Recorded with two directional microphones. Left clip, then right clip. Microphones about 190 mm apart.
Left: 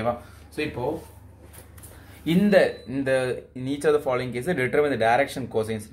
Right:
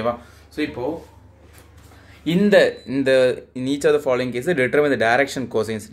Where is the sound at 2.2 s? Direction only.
15° right (ahead or behind).